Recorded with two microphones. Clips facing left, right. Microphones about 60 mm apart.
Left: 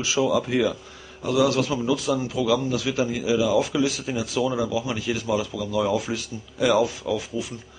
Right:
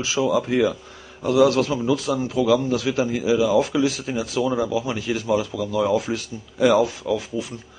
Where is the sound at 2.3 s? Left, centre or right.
Centre.